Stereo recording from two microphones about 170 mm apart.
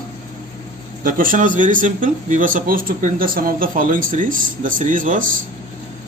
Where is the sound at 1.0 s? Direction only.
55° right (ahead or behind).